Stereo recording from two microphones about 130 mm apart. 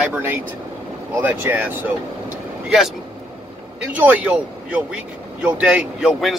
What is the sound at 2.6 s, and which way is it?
Speech, 5° right (ahead or behind).